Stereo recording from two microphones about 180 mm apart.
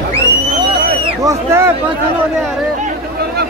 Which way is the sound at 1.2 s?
15° right (ahead or behind).